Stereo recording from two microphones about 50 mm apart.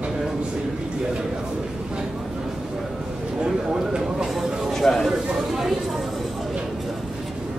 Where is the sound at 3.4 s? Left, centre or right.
Centre.